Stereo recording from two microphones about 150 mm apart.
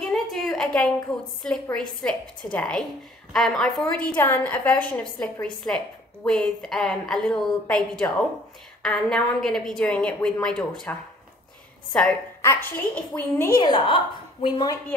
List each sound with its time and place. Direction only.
0.0 s a sound: centre (ahead or behind)
1.1 s a woman's voice: 5° left (ahead or behind)
8.8 s a woman's voice: 5° left (ahead or behind)
13.6 s a woman's voice: 30° left (ahead or behind)